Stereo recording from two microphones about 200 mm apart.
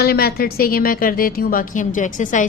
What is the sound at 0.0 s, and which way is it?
A woman's voice, 50° left (ahead or behind).